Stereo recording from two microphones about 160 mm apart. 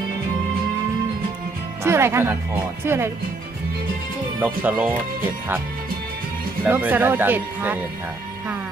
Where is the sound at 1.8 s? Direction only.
15° right (ahead or behind).